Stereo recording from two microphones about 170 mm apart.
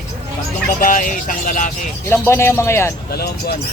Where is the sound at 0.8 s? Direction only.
50° left (ahead or behind).